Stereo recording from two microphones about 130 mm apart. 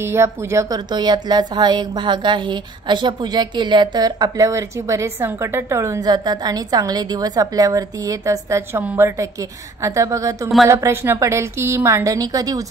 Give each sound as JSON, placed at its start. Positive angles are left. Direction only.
{"t": 0.0, "sound": "a woman's voice", "side_deg": -20}